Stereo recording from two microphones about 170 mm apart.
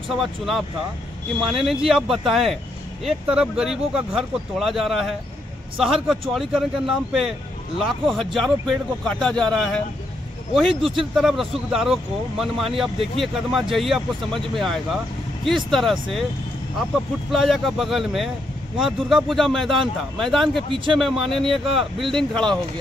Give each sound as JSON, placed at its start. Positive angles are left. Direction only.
{"t": 0.1, "sound": "speech", "side_deg": 0}
{"t": 11.1, "sound": "speech", "side_deg": 0}
{"t": 20.7, "sound": "a man's voice", "side_deg": -30}
{"t": 21.3, "sound": "speech", "side_deg": 0}